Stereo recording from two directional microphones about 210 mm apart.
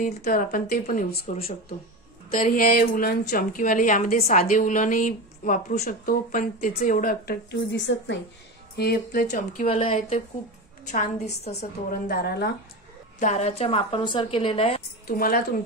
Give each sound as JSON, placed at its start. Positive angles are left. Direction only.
{"t": 0.0, "sound": "a woman's voice", "side_deg": 40}
{"t": 2.3, "sound": "a woman's voice", "side_deg": 40}
{"t": 7.7, "sound": "a woman's voice", "side_deg": 60}
{"t": 8.7, "sound": "a woman's voice", "side_deg": 45}
{"t": 13.2, "sound": "a woman's voice", "side_deg": 35}
{"t": 15.0, "sound": "a woman's voice", "side_deg": 45}